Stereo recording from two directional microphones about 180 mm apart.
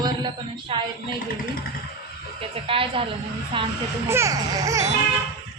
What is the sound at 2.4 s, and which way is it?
Speech, 30° right (ahead or behind).